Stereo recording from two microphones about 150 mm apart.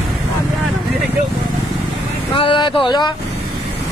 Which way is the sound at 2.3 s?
35° left (ahead or behind).